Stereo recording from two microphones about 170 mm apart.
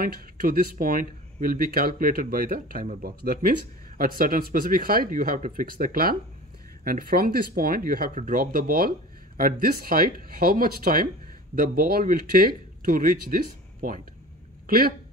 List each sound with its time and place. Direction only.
0.0 s speech: 60° right (ahead or behind)